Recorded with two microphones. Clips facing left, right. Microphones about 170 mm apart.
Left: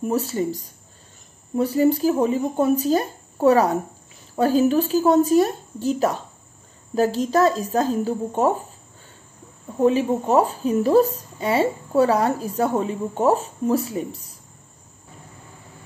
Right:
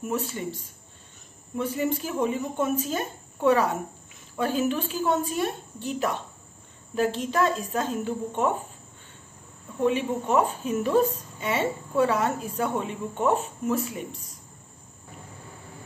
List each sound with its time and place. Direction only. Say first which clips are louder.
0.0 s a woman's voice: left 7 dB; 35° left (ahead or behind)
9.8 s a woman's voice: left 6 dB; 35° left (ahead or behind)